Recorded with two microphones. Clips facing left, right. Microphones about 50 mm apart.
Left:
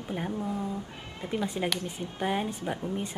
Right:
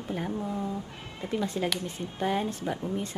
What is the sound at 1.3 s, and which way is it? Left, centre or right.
Speech, centre.